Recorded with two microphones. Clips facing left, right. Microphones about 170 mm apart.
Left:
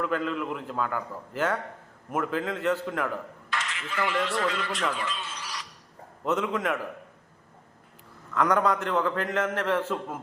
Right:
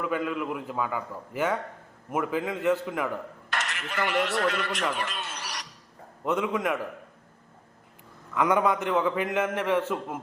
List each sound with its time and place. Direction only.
0.0 s a man's voice: 5° right (ahead or behind)
3.5 s a man's voice: 65° right (ahead or behind)
6.2 s a man's voice: centre (ahead or behind)
8.4 s a man's voice: 5° right (ahead or behind)